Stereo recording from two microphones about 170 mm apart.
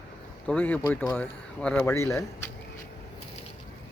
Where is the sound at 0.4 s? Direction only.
10° left (ahead or behind).